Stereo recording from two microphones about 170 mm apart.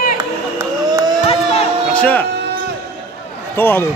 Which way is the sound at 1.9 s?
10° left (ahead or behind).